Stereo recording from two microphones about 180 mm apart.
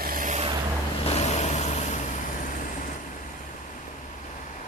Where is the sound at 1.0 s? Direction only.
40° left (ahead or behind).